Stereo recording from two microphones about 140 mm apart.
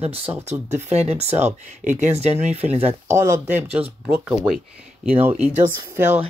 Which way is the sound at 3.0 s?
20° right (ahead or behind).